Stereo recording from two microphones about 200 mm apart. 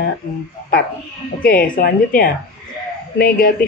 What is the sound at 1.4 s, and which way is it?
Speech, 45° left (ahead or behind).